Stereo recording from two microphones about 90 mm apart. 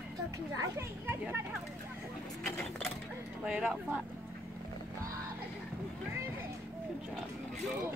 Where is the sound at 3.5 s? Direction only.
15° right (ahead or behind).